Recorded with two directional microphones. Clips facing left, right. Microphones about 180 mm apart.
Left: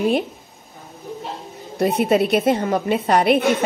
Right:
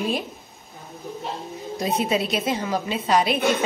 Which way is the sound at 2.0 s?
60° left (ahead or behind).